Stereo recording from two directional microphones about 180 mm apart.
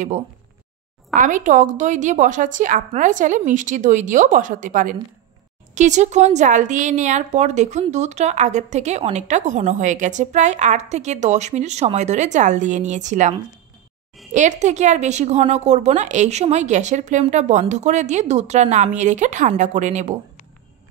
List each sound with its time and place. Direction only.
1.1 s a woman's voice: 45° right (ahead or behind)
14.3 s a woman's voice: 40° right (ahead or behind)